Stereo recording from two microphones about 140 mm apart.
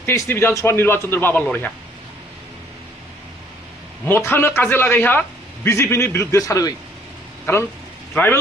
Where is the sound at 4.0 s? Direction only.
15° left (ahead or behind).